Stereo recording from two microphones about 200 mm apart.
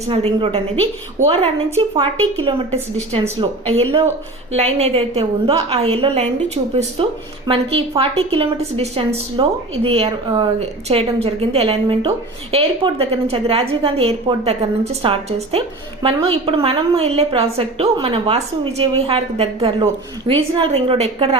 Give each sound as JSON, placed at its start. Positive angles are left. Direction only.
{"t": 0.1, "sound": "a woman's voice", "side_deg": -25}
{"t": 4.5, "sound": "a woman's voice", "side_deg": -30}